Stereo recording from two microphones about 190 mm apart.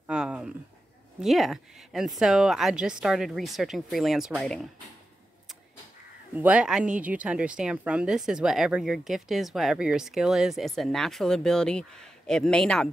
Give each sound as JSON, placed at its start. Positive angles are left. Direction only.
{"t": 0.0, "sound": "a sound", "side_deg": -5}
{"t": 1.2, "sound": "speech", "side_deg": 0}
{"t": 6.3, "sound": "speech", "side_deg": -10}